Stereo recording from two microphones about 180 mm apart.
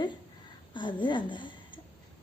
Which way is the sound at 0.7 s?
25° left (ahead or behind).